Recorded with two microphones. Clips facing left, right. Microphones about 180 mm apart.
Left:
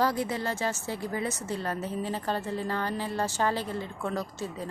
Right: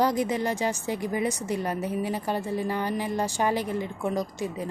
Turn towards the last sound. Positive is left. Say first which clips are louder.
# right 4 dB
turn(degrees=-15)  # may be behind; listen again after turning